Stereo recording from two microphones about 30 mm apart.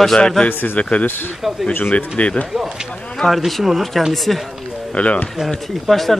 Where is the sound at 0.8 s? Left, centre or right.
Left.